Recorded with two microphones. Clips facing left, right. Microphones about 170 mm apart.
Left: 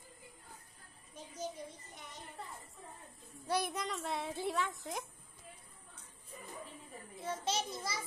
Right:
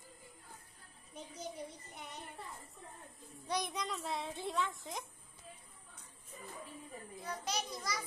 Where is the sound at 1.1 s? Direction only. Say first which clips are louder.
Left 3 dB; 65° right (ahead or behind).